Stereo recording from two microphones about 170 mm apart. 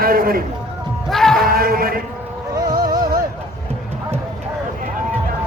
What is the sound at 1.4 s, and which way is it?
Music, 60° right (ahead or behind).